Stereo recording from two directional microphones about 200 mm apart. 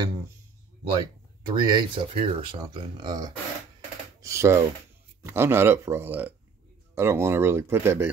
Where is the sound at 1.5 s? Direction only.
25° right (ahead or behind).